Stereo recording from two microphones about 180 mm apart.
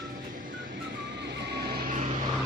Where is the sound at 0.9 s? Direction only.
70° right (ahead or behind); by 2.0 s 50° right (ahead or behind).